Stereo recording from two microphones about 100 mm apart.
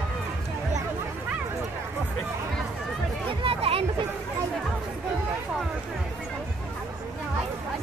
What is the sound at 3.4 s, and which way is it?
Chatter, 80° right.